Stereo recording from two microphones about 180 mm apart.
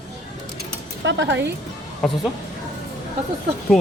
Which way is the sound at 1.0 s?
85° right.